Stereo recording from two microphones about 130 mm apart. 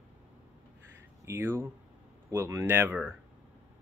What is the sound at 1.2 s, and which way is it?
Speech, 20° right (ahead or behind).